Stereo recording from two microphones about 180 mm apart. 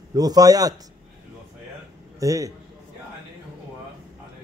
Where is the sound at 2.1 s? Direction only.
20° right (ahead or behind).